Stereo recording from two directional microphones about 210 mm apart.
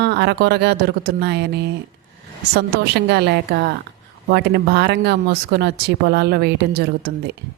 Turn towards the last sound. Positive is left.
turn(degrees=-50)  # may be behind; listen again after turning